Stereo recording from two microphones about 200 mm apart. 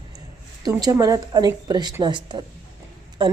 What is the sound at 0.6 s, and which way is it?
Speech, 20° right (ahead or behind).